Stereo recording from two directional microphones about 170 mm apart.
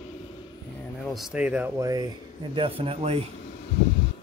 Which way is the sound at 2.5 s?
30° right (ahead or behind).